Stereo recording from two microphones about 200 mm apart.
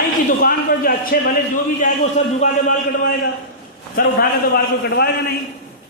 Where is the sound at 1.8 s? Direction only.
40° left (ahead or behind).